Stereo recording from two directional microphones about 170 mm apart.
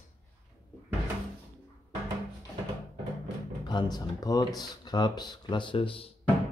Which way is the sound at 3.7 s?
25° left (ahead or behind).